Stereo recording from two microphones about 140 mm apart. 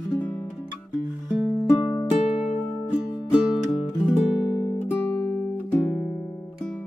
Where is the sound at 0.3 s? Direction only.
10° left (ahead or behind).